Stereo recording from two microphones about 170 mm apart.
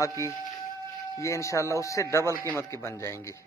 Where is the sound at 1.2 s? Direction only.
15° left (ahead or behind).